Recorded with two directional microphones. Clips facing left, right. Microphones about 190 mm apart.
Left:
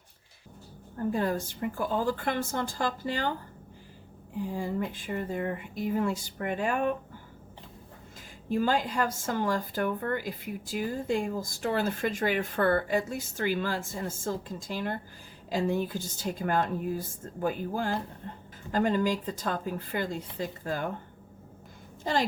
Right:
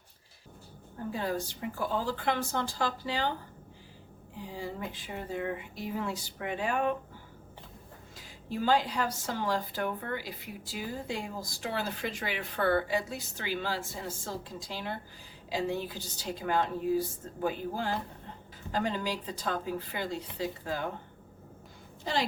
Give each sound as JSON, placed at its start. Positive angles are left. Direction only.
{"t": 1.1, "sound": "a woman's voice", "side_deg": 50}
{"t": 4.4, "sound": "a woman's voice", "side_deg": 50}
{"t": 8.4, "sound": "a woman's voice", "side_deg": 50}
{"t": 22.0, "sound": "a woman's voice", "side_deg": 45}